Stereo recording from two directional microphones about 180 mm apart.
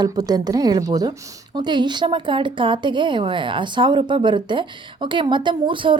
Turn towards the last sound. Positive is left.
turn(degrees=-25)  # may be behind; listen again after turning